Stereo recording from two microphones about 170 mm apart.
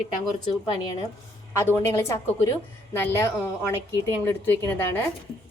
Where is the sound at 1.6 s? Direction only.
15° left (ahead or behind).